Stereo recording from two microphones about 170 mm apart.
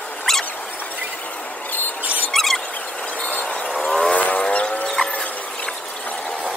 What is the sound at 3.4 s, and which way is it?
Vehicle, 5° left (ahead or behind).